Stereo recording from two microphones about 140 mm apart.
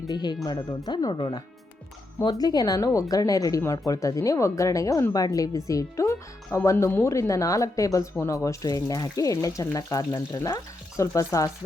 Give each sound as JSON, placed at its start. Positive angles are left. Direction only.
{"t": 0.1, "sound": "speech", "side_deg": 30}